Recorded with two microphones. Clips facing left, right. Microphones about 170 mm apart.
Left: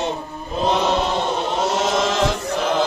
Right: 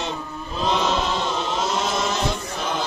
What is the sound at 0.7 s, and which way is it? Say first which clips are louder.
Chant: left 3 dB; 55° left (ahead or behind).